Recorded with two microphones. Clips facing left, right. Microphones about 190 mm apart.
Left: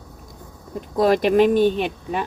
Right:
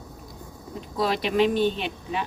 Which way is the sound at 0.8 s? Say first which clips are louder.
Left 8 dB; 50° left (ahead or behind).